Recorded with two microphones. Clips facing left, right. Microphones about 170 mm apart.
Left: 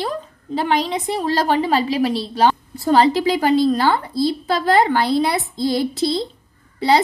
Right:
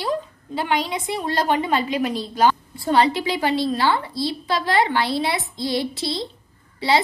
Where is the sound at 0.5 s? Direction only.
40° left (ahead or behind).